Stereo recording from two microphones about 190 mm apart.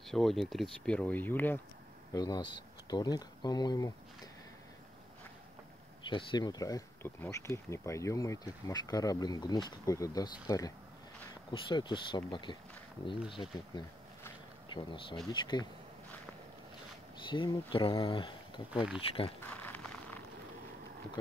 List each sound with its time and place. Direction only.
0.0 s speech: centre (ahead or behind)
2.1 s speech: 20° left (ahead or behind)
6.0 s speech: 25° left (ahead or behind)
17.3 s speech: 25° left (ahead or behind)
19.4 s a sound: 10° left (ahead or behind)